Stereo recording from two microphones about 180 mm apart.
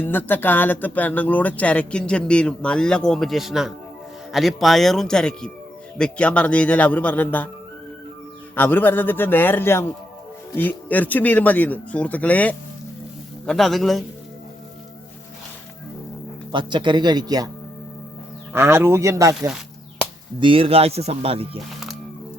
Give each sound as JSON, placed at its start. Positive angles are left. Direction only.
{"t": 0.0, "sound": "speech", "side_deg": 10}
{"t": 8.5, "sound": "speech", "side_deg": 10}
{"t": 16.5, "sound": "speech", "side_deg": -25}
{"t": 18.5, "sound": "speech", "side_deg": -15}
{"t": 20.4, "sound": "speech", "side_deg": -30}